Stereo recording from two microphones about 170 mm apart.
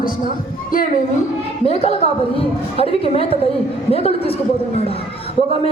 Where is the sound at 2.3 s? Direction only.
35° left (ahead or behind).